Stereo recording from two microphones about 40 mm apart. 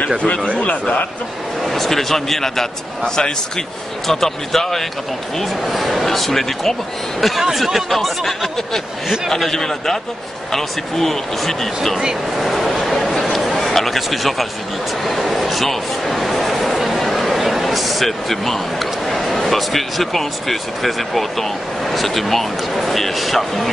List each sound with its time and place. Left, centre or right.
0.6 s a man's voice: left
1.6 s speech: centre
3.2 s speech: centre
4.1 s speech: centre
13.0 s a sound: centre
15.0 s speech: centre